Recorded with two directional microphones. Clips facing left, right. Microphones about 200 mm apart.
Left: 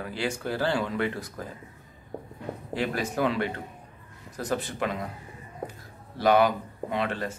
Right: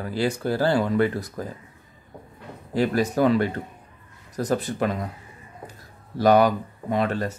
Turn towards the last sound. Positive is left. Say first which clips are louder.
# right 5 dB
turn(degrees=-40)  # may be behind; listen again after turning